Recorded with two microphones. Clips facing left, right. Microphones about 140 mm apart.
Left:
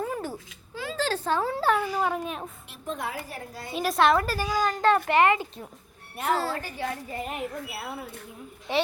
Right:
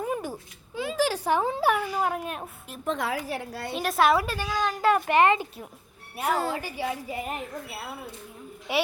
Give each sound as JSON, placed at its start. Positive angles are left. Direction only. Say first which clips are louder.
{"t": 0.0, "sound": "babbling", "louder": "right 1 dB", "side_deg": -15}
{"t": 0.8, "sound": "speech", "louder": "right 3 dB", "side_deg": -15}
{"t": 2.8, "sound": "a woman's voice", "louder": "right 4 dB", "side_deg": -85}
{"t": 3.8, "sound": "a woman's voice", "louder": "left 1 dB", "side_deg": 0}
{"t": 4.4, "sound": "a child's voice", "louder": "left 2 dB", "side_deg": 10}
{"t": 4.7, "sound": "speech", "louder": "right 1 dB", "side_deg": -10}
{"t": 8.7, "sound": "speech", "louder": "even", "side_deg": -10}